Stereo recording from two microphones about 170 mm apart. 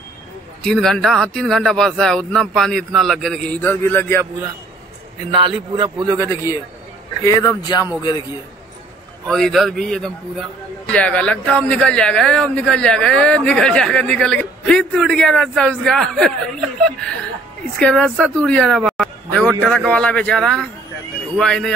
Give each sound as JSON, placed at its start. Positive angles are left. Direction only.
{"t": 0.7, "sound": "a man's voice", "side_deg": 0}
{"t": 5.3, "sound": "a man's voice", "side_deg": -30}
{"t": 6.1, "sound": "speech", "side_deg": 15}
{"t": 9.3, "sound": "a man's voice", "side_deg": 0}